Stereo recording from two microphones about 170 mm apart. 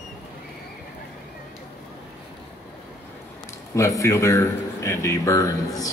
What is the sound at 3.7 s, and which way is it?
Speech, 20° left (ahead or behind).